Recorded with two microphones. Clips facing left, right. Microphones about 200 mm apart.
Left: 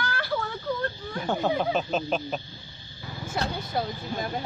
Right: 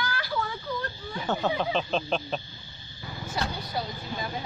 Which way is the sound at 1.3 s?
10° left (ahead or behind).